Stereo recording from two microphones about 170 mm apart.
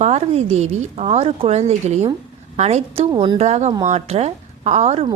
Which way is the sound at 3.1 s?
25° right (ahead or behind).